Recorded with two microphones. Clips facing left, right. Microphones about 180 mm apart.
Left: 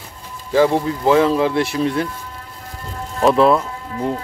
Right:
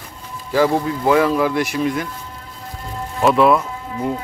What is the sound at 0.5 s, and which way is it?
Speech, 20° left (ahead or behind).